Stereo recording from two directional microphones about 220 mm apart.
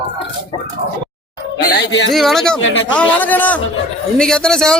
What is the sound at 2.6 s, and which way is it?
Music, 60° left (ahead or behind).